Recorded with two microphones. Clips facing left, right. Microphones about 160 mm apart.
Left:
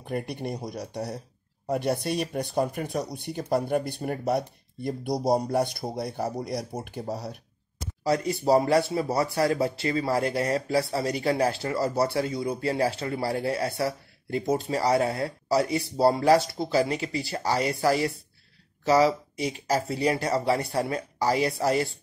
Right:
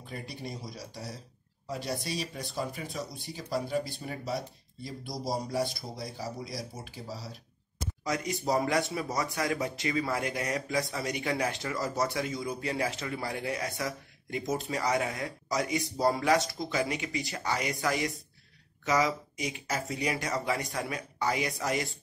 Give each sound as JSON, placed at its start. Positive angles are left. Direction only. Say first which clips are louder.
{"t": 0.0, "sound": "speech", "louder": "left 9 dB", "side_deg": 60}
{"t": 8.0, "sound": "speech", "louder": "left 7 dB", "side_deg": 35}